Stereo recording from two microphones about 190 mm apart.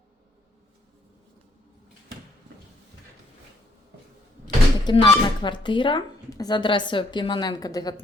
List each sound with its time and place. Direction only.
4.4 s speech: 25° left (ahead or behind)